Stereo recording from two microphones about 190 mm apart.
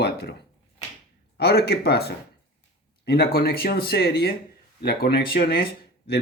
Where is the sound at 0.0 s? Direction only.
55° left (ahead or behind).